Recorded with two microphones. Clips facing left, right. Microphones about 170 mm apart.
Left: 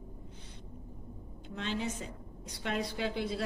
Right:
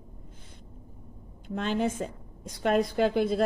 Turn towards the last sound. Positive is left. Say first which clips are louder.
# right 10 dB
turn(degrees=-50)  # may be behind; listen again after turning